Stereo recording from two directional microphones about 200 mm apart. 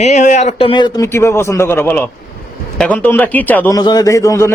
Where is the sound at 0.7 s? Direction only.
20° left (ahead or behind).